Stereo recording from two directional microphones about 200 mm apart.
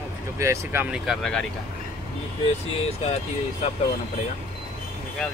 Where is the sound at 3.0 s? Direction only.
30° left (ahead or behind).